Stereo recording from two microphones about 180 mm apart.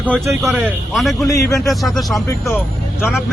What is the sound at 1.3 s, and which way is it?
Speech, 20° left (ahead or behind).